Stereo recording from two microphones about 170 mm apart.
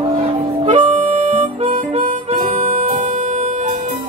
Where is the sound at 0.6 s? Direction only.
40° right (ahead or behind).